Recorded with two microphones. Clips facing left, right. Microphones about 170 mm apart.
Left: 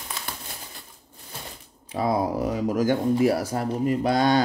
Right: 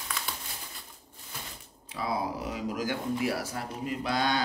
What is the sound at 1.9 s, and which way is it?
Speech, 45° left (ahead or behind).